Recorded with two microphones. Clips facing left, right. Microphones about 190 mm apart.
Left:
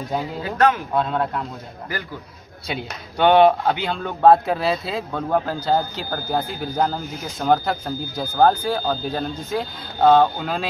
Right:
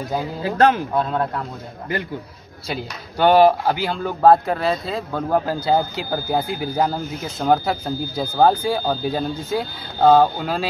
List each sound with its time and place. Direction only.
0.4 s speech: 25° right (ahead or behind)
2.7 s speech: 5° right (ahead or behind)